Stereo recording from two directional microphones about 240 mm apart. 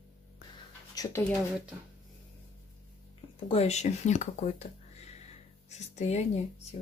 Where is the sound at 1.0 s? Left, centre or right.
Centre.